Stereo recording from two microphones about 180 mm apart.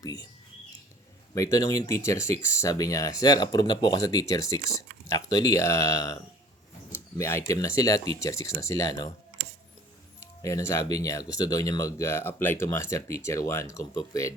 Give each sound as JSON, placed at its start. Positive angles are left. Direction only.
{"t": 0.0, "sound": "speech", "side_deg": 20}
{"t": 1.5, "sound": "speech", "side_deg": 20}
{"t": 7.2, "sound": "speech", "side_deg": 15}
{"t": 10.2, "sound": "speech", "side_deg": 15}